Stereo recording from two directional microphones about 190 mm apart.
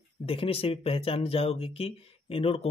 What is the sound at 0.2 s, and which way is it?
Speech, 30° left (ahead or behind).